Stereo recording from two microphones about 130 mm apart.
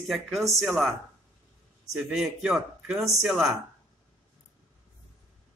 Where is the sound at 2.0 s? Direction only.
5° right (ahead or behind).